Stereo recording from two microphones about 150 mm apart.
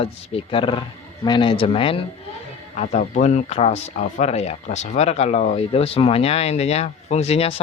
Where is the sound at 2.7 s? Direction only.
50° left (ahead or behind).